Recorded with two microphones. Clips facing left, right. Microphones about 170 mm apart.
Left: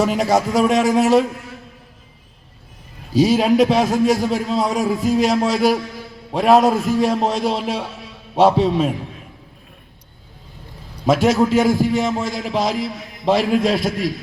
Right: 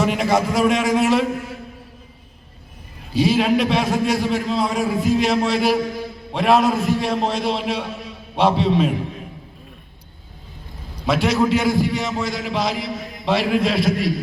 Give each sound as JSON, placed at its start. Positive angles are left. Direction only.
{"t": 0.0, "sound": "a man's voice", "side_deg": 40}
{"t": 3.2, "sound": "a man's voice", "side_deg": 40}
{"t": 11.0, "sound": "a man's voice", "side_deg": 45}